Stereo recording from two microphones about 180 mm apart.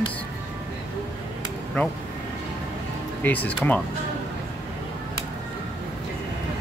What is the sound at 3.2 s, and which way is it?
Speech, 10° left (ahead or behind).